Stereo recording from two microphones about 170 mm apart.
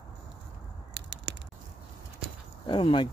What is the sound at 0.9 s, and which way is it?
Crushing, 90° right.